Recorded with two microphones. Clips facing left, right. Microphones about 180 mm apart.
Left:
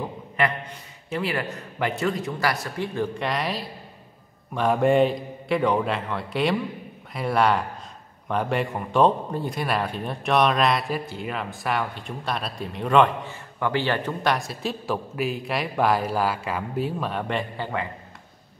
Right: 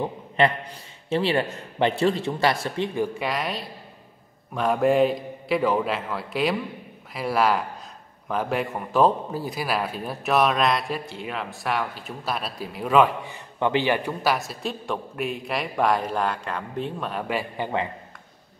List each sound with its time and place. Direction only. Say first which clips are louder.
1.1 s a man's voice: right 4 dB; 30° right (ahead or behind)
2.9 s speech: right 1 dB; 15° right (ahead or behind)
3.3 s a man's voice: left 1 dB; centre (ahead or behind)
13.2 s a man's voice: right 2 dB; 20° right (ahead or behind); by 17.5 s 5° right (ahead or behind)
17.6 s a man's voice: right 2 dB; 20° right (ahead or behind)